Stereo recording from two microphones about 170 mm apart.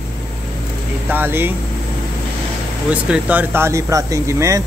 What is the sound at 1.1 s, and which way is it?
Speech, 10° right (ahead or behind).